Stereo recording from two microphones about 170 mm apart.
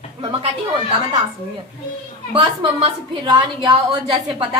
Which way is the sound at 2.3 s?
30° right (ahead or behind).